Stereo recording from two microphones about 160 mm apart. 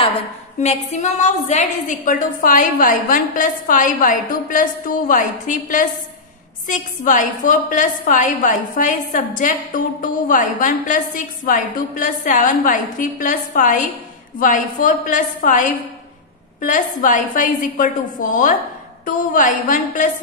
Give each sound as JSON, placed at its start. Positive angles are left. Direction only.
{"t": 0.6, "sound": "a woman's voice", "side_deg": 45}